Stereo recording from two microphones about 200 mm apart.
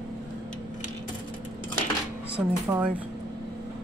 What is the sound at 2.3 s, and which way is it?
Speech, 5° right (ahead or behind).